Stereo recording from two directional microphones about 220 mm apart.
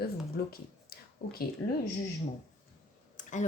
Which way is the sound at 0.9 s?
45° left (ahead or behind).